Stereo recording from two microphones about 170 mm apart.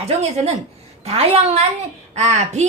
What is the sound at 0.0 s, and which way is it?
A woman's voice, 40° right (ahead or behind).